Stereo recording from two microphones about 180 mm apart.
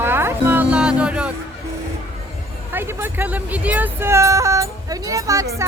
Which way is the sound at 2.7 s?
10° right (ahead or behind).